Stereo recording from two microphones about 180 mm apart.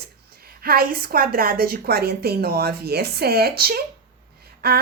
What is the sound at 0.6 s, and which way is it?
A woman's voice, 55° right (ahead or behind).